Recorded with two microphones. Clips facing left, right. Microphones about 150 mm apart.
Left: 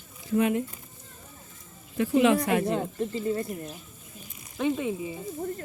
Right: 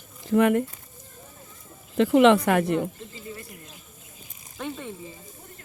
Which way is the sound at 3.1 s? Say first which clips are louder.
Left 11 dB; 45° left (ahead or behind).